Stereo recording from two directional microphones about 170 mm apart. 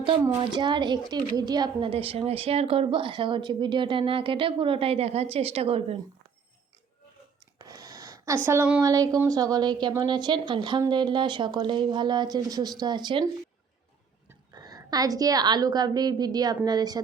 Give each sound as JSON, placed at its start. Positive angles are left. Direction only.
{"t": 0.3, "sound": "a woman's voice", "side_deg": -25}
{"t": 7.6, "sound": "a sound", "side_deg": -20}
{"t": 8.4, "sound": "a woman's voice", "side_deg": -10}
{"t": 14.3, "sound": "a woman's voice", "side_deg": -20}